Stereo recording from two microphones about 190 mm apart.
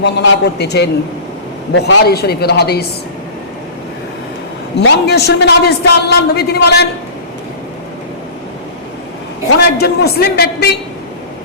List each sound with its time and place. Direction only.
0.0 s a man's voice: 60° left (ahead or behind)
4.8 s a man's voice: 60° left (ahead or behind)
9.7 s a man's voice: 55° left (ahead or behind)